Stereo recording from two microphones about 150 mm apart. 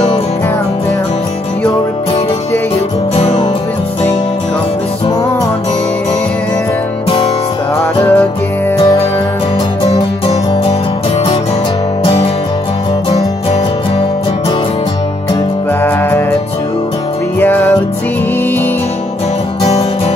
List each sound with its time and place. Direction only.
3.2 s music: 40° left (ahead or behind)
8.0 s music: 10° left (ahead or behind)
15.8 s music: 15° left (ahead or behind)
17.4 s music: 15° left (ahead or behind)